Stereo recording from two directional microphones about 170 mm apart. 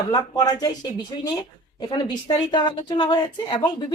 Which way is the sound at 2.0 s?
25° left (ahead or behind).